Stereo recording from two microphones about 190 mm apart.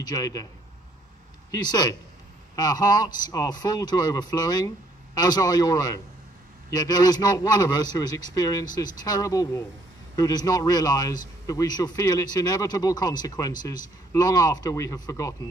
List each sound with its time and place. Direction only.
0.0 s a man's voice: 20° left (ahead or behind)
2.5 s a man's voice: 20° left (ahead or behind)